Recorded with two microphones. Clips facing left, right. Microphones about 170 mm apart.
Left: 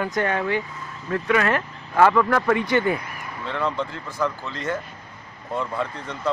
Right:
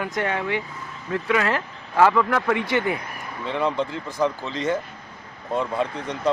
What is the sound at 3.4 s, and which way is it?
Speech, 15° right (ahead or behind).